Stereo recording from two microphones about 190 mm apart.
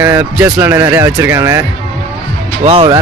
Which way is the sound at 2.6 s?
30° right (ahead or behind).